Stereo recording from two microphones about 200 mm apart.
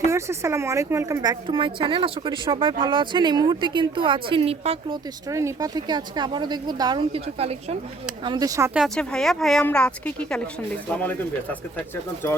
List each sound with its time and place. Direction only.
0.1 s a woman's voice: 15° right (ahead or behind); by 4.9 s 30° right (ahead or behind)
5.3 s a woman's voice: 15° right (ahead or behind)
8.2 s speech: 20° right (ahead or behind)
8.8 s speech: centre (ahead or behind)